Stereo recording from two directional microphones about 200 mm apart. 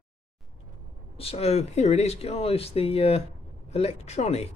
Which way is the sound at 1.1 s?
30° left (ahead or behind).